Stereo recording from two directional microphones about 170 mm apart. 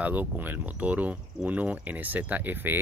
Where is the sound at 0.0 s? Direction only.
10° right (ahead or behind).